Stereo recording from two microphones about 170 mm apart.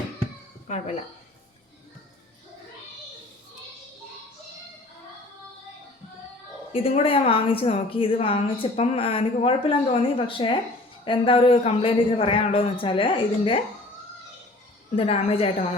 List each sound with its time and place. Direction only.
6.7 s speech: 35° left (ahead or behind)
14.9 s speech: 35° left (ahead or behind)